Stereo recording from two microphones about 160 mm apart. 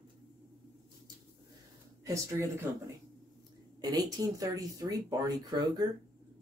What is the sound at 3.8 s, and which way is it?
Speech, 25° right (ahead or behind).